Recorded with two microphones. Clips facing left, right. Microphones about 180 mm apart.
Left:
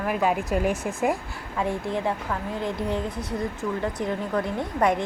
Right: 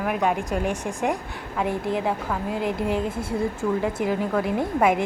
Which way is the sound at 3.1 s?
30° right (ahead or behind).